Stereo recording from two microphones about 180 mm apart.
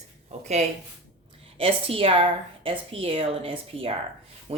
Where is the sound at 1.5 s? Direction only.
30° right (ahead or behind).